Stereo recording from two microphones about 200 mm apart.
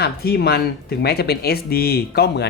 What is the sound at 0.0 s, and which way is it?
Speech, 50° left (ahead or behind).